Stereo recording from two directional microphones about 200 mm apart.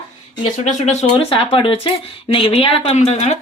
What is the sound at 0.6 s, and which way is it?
Speech, 35° left (ahead or behind).